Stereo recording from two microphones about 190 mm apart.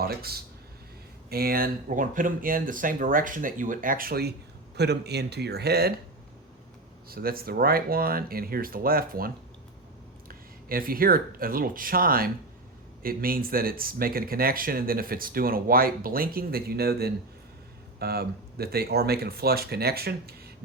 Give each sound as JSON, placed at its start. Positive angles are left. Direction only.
{"t": 0.0, "sound": "speech", "side_deg": -55}
{"t": 7.1, "sound": "speech", "side_deg": -50}